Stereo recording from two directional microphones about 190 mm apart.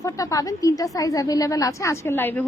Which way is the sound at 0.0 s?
20° left (ahead or behind).